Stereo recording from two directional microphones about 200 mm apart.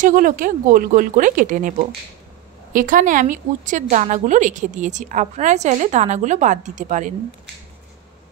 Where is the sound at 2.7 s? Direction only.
40° right (ahead or behind).